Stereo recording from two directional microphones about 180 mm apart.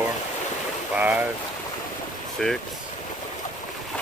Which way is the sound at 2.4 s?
5° left (ahead or behind).